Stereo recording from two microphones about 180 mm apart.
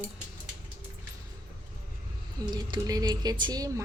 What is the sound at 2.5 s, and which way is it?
Speech, 25° right (ahead or behind).